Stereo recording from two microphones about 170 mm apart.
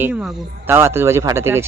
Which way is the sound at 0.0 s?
5° right (ahead or behind).